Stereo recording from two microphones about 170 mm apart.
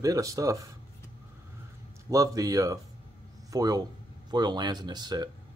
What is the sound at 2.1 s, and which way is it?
Speech, 20° right (ahead or behind).